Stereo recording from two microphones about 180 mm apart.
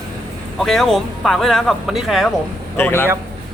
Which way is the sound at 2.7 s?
10° left (ahead or behind).